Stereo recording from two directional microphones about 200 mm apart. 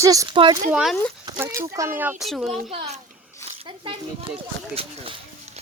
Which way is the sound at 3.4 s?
25° right (ahead or behind).